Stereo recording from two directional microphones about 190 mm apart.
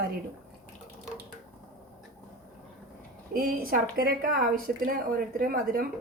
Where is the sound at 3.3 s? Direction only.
50° right (ahead or behind).